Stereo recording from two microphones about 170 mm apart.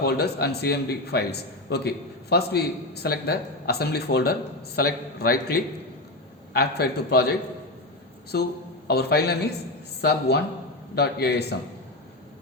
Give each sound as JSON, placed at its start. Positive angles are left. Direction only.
{"t": 0.0, "sound": "a man's voice", "side_deg": 70}
{"t": 8.9, "sound": "a man's voice", "side_deg": 70}